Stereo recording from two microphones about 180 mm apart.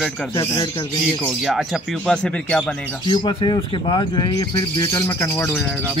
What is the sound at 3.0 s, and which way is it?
Speech, 25° left (ahead or behind).